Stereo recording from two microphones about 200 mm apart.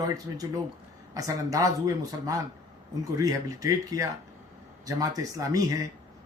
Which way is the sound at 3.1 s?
15° right (ahead or behind).